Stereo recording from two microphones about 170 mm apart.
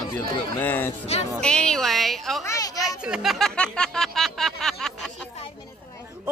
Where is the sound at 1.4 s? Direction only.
5° left (ahead or behind).